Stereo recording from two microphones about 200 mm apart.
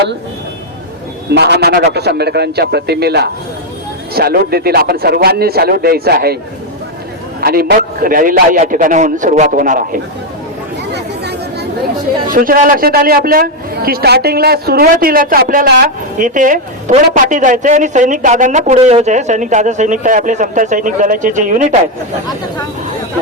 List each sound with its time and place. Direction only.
1.3 s a man's voice: 55° right (ahead or behind)
7.4 s a man's voice: 50° right (ahead or behind)
10.9 s chatter: 55° right (ahead or behind)
12.3 s a man's voice: 45° right (ahead or behind)